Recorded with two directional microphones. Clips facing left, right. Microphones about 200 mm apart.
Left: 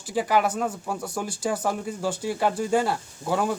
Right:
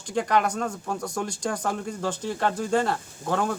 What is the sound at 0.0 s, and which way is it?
Speech, 5° left (ahead or behind).